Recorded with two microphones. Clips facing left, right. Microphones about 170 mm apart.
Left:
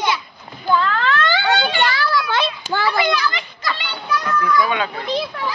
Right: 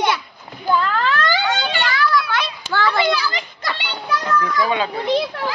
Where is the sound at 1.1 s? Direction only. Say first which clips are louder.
Left 1 dB; 40° right (ahead or behind).